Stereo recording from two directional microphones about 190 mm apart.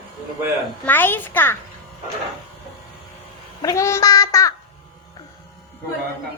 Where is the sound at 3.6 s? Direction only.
15° left (ahead or behind).